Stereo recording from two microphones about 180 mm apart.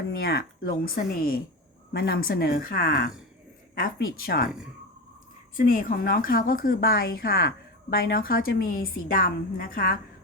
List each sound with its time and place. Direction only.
0.2 s speech: 60° left (ahead or behind)
5.5 s speech: 50° left (ahead or behind)